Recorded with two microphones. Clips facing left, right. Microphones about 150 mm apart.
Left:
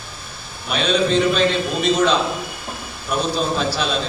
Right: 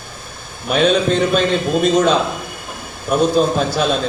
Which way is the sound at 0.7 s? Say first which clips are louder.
Right 4 dB; 50° right (ahead or behind).